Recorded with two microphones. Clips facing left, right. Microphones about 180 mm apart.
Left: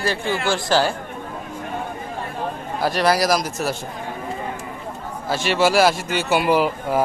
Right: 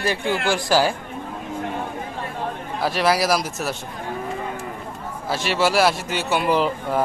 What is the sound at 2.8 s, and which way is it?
Speech, centre (ahead or behind).